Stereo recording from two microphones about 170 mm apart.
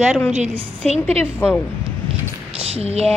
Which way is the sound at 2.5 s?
35° right (ahead or behind).